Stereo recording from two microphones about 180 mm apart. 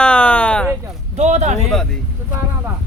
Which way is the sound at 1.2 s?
40° right (ahead or behind).